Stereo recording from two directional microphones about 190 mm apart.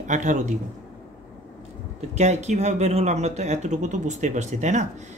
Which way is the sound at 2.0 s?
35° right (ahead or behind).